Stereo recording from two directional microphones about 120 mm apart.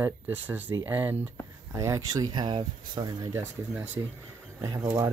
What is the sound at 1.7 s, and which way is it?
Speech, 30° right (ahead or behind).